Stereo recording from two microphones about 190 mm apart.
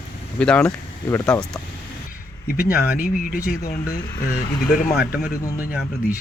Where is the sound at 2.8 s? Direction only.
50° left (ahead or behind).